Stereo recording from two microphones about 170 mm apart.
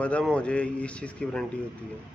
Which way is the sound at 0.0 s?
5° left (ahead or behind).